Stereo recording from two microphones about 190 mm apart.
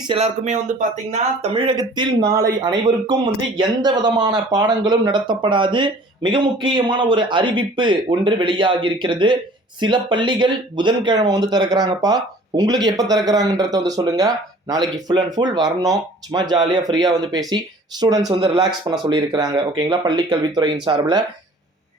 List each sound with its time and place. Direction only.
0.1 s speech: 35° right (ahead or behind); by 21.2 s 20° right (ahead or behind)